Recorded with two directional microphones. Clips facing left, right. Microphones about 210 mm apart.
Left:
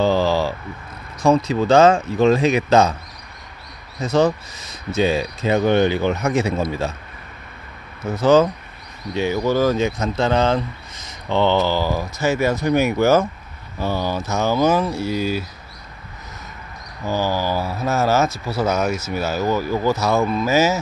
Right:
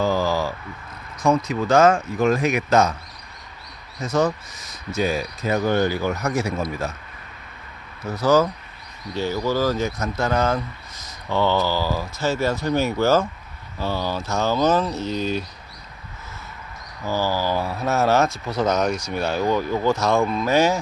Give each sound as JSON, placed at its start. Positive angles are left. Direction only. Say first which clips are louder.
{"t": 0.0, "sound": "vehicle", "louder": "left 4 dB", "side_deg": 30}
{"t": 1.2, "sound": "speech", "louder": "left 4 dB", "side_deg": 30}
{"t": 4.0, "sound": "speech", "louder": "left 4 dB", "side_deg": 30}
{"t": 8.0, "sound": "speech", "louder": "left 4 dB", "side_deg": 25}
{"t": 17.0, "sound": "speech", "louder": "left 2 dB", "side_deg": 15}
{"t": 17.6, "sound": "speech", "louder": "left 1 dB", "side_deg": 0}